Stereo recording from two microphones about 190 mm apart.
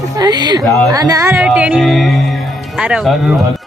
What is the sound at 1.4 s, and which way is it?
Speech, 5° right (ahead or behind).